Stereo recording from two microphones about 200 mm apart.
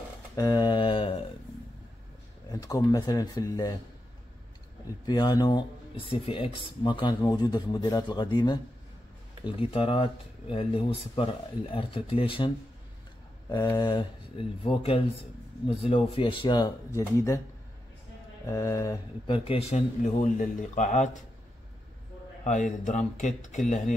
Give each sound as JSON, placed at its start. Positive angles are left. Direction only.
{"t": 0.4, "sound": "mantra", "side_deg": 15}
{"t": 2.5, "sound": "speech", "side_deg": 20}
{"t": 5.0, "sound": "speech", "side_deg": 20}
{"t": 9.6, "sound": "speech", "side_deg": 30}
{"t": 18.5, "sound": "speech", "side_deg": 15}
{"t": 22.4, "sound": "speech", "side_deg": 40}